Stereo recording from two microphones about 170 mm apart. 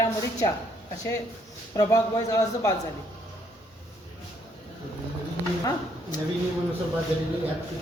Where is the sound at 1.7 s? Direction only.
20° left (ahead or behind).